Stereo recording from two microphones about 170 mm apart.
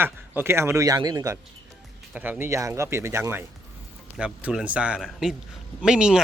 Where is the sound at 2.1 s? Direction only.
10° right (ahead or behind).